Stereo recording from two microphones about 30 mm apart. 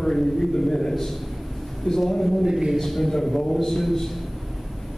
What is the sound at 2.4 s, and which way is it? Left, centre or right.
Speech, right.